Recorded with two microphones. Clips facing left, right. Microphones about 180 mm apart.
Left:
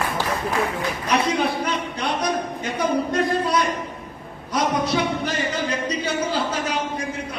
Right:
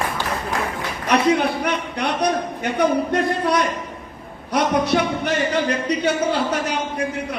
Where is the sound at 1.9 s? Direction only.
65° right (ahead or behind).